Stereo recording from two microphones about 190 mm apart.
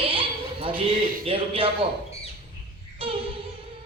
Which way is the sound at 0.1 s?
30° right (ahead or behind).